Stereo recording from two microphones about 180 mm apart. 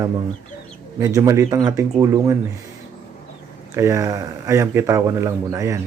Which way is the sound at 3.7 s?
15° right (ahead or behind).